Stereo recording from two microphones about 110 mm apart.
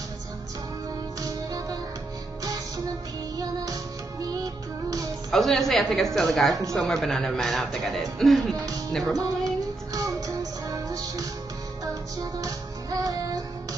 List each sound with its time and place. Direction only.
1.2 s music: 35° right (ahead or behind)
3.3 s music: 35° right (ahead or behind)
5.3 s a man's voice: centre (ahead or behind)
9.9 s music: 30° right (ahead or behind)